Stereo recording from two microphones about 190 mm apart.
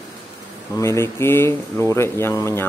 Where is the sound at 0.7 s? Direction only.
15° left (ahead or behind).